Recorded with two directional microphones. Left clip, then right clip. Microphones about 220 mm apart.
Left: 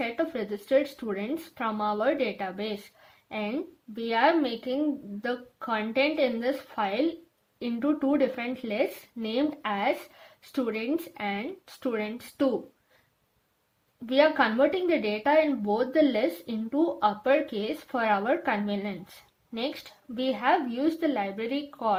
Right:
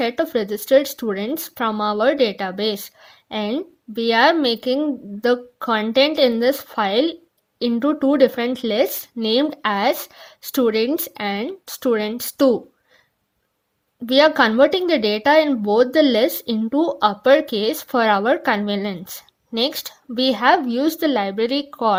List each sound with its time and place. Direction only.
0.0 s speech: 40° right (ahead or behind)
14.1 s speech: 45° right (ahead or behind)
20.1 s speech: 45° right (ahead or behind)